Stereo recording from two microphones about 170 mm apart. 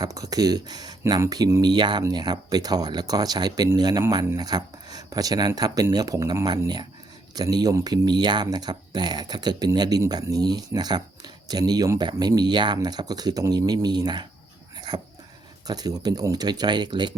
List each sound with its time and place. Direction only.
0.0 s speech: 20° right (ahead or behind)
14.8 s dog: 25° right (ahead or behind)
15.6 s speech: 25° right (ahead or behind)